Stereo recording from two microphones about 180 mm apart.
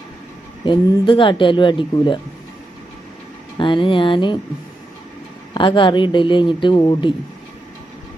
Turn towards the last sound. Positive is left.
turn(degrees=25)  # may be behind; listen again after turning